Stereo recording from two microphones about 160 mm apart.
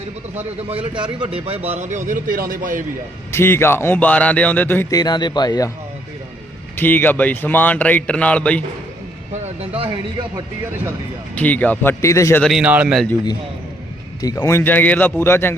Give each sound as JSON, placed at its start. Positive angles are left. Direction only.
{"t": 0.3, "sound": "a man's voice", "side_deg": -35}
{"t": 3.3, "sound": "speech", "side_deg": 15}
{"t": 4.9, "sound": "speech", "side_deg": 25}
{"t": 6.7, "sound": "speech", "side_deg": 10}
{"t": 9.3, "sound": "vehicle", "side_deg": -40}
{"t": 11.3, "sound": "speech", "side_deg": 10}
{"t": 12.4, "sound": "a man's voice", "side_deg": 0}
{"t": 14.2, "sound": "speech", "side_deg": 25}